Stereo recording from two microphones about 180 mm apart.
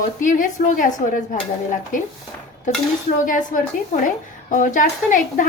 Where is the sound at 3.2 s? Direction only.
45° left (ahead or behind).